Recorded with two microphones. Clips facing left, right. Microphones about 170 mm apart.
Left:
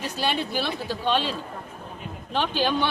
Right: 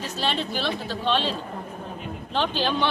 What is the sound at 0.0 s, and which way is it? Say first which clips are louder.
A woman's voice: left 1 dB; 10° left (ahead or behind).